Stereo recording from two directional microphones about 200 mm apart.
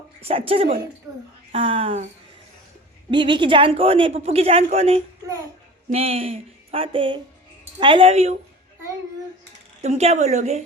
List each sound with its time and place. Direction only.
0.2 s speech: 30° right (ahead or behind)
3.1 s speech: 25° right (ahead or behind)
9.8 s a woman's voice: 35° right (ahead or behind)